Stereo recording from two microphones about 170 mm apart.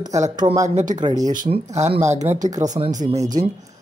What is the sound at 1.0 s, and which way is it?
Speech, 25° right (ahead or behind).